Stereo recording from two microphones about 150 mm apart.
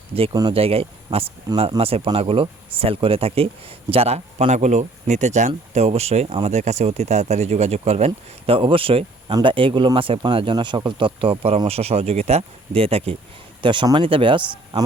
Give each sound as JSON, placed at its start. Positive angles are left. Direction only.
{"t": 0.5, "sound": "speech", "side_deg": -40}